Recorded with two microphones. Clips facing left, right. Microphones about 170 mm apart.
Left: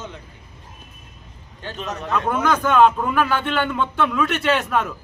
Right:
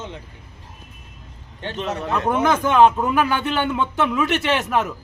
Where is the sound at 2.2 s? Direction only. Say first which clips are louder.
Right 2 dB; 20° right (ahead or behind).